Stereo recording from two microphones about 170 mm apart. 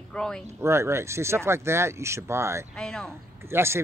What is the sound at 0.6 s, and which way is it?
Speech, 15° right (ahead or behind).